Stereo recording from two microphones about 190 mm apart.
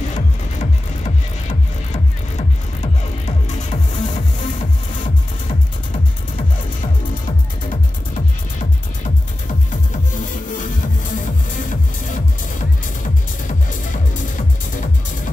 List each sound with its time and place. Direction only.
0.1 s music: 40° left (ahead or behind)
2.3 s music: 40° left (ahead or behind)
9.7 s music: 45° left (ahead or behind)
11.7 s music: 40° left (ahead or behind)
14.3 s music: 40° left (ahead or behind)